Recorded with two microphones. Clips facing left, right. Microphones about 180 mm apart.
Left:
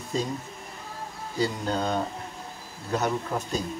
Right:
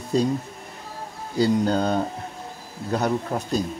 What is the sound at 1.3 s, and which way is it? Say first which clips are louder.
Speech: right 7 dB; 35° right (ahead or behind).